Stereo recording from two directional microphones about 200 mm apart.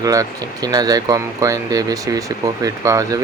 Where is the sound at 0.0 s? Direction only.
15° right (ahead or behind).